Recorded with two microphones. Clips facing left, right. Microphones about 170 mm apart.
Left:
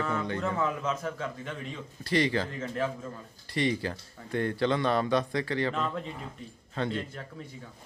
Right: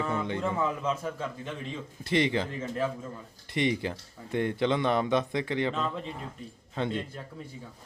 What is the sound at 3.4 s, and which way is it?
Speech, 20° right (ahead or behind).